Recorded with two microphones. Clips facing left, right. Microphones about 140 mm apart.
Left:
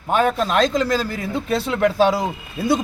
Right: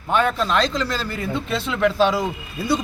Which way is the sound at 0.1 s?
45° left (ahead or behind).